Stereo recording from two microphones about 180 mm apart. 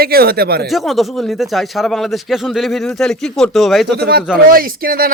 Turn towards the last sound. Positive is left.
turn(degrees=-55)  # may be behind; listen again after turning